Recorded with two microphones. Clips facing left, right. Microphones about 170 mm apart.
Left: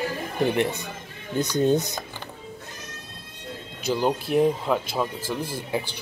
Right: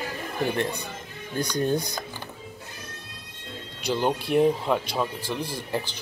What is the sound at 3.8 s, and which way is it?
Speech, 5° left (ahead or behind).